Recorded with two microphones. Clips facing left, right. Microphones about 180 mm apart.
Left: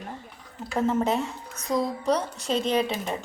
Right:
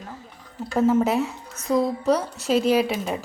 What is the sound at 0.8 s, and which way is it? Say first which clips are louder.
A woman's voice: right 5 dB; 5° right (ahead or behind).